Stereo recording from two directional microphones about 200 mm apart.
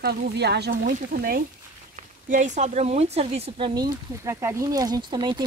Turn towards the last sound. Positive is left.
turn(degrees=-20)  # may be behind; listen again after turning